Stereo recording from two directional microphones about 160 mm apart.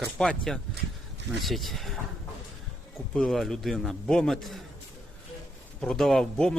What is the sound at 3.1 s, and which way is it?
A man's voice, centre (ahead or behind).